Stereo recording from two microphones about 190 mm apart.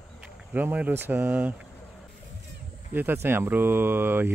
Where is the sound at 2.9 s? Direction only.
10° right (ahead or behind).